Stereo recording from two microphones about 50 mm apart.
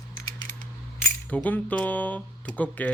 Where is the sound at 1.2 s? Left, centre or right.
Left.